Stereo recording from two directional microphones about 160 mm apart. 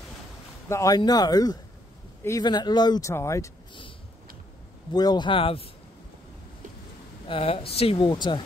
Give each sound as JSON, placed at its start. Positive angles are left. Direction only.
{"t": 0.7, "sound": "speech", "side_deg": 20}
{"t": 4.9, "sound": "speech", "side_deg": 25}
{"t": 7.2, "sound": "speech", "side_deg": 35}